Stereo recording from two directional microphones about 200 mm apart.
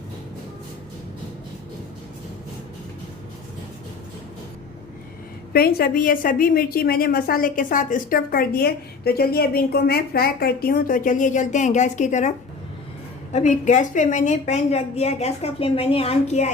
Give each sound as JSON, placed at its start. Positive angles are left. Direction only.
{"t": 5.5, "sound": "a woman's voice", "side_deg": 50}
{"t": 13.3, "sound": "a woman's voice", "side_deg": 35}